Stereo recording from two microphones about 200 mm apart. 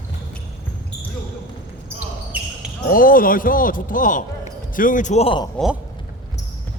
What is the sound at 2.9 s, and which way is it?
Speech, 45° left (ahead or behind).